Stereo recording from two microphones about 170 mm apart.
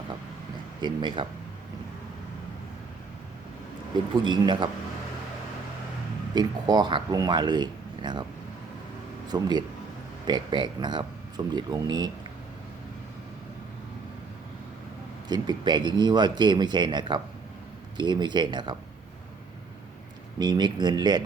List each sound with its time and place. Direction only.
0.8 s speech: 25° right (ahead or behind)
4.1 s speech: 25° right (ahead or behind)
6.3 s speech: 25° right (ahead or behind)
9.3 s speech: 25° right (ahead or behind)
15.3 s speech: 25° right (ahead or behind)
20.4 s speech: 25° right (ahead or behind)